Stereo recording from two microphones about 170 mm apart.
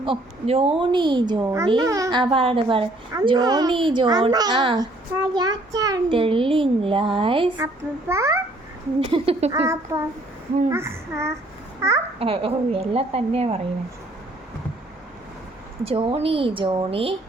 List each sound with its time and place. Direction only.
0.0 s a woman's voice: 35° right (ahead or behind)
6.1 s a woman's voice: 30° right (ahead or behind)
7.6 s a child's voice: 15° right (ahead or behind)
9.0 s a woman's voice: 35° right (ahead or behind)
9.9 s a child's voice: 20° right (ahead or behind)
12.2 s a woman's voice: 35° right (ahead or behind)
15.8 s a woman's voice: 30° right (ahead or behind)